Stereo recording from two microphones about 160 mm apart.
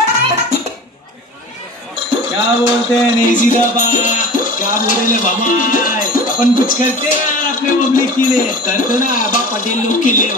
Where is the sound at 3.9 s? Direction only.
55° left (ahead or behind).